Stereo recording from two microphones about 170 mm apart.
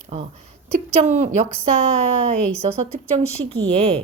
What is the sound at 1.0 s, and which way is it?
Speech, 40° right (ahead or behind).